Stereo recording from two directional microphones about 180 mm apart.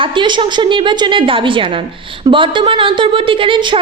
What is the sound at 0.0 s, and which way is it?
A woman's voice, 25° right (ahead or behind).